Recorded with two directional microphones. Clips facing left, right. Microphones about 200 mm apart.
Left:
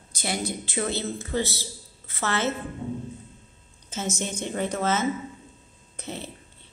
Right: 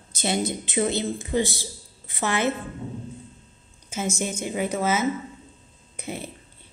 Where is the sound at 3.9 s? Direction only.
10° right (ahead or behind).